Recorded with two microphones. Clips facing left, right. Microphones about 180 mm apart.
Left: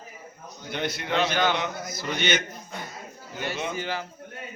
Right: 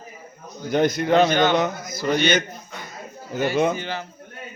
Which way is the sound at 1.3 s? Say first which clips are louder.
Right 5 dB; 5° left (ahead or behind).